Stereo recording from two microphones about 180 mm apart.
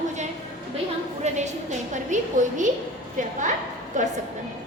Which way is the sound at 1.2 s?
40° right (ahead or behind).